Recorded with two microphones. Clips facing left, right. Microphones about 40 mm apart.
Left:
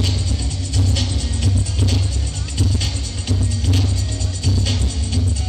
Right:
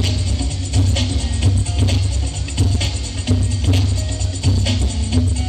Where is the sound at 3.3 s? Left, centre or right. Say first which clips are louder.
Right 2 dB; right.